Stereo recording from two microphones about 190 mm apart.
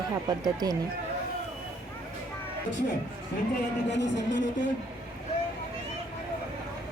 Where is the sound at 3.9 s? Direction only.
70° left (ahead or behind).